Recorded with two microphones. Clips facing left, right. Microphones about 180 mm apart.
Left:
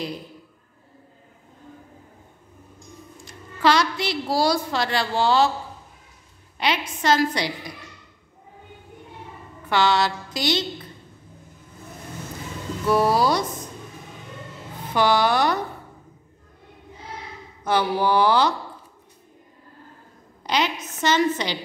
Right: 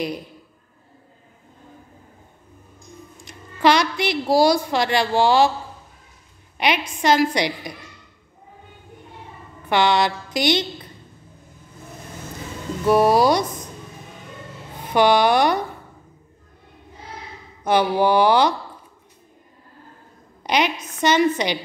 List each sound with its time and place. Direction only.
3.3 s a woman's voice: 15° right (ahead or behind)
6.6 s a woman's voice: 15° right (ahead or behind)
9.7 s a woman's voice: 15° right (ahead or behind)
12.8 s speech: 15° right (ahead or behind)
14.9 s a woman's voice: 15° right (ahead or behind)
17.6 s a woman's voice: 15° right (ahead or behind)
20.4 s a woman's voice: 15° right (ahead or behind)